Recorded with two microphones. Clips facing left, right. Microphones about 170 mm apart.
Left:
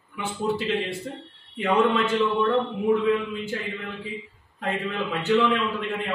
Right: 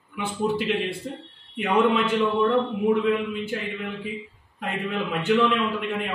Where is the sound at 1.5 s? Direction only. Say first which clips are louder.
Even; 10° right (ahead or behind).